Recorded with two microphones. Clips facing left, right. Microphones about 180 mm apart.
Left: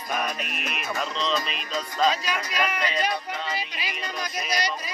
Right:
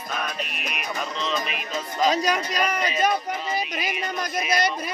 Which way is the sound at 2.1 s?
40° right (ahead or behind).